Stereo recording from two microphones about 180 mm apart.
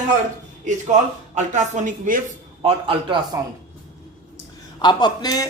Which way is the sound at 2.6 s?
30° right (ahead or behind).